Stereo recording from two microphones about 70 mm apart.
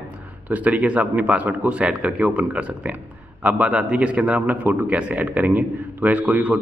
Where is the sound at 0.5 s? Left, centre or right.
Right.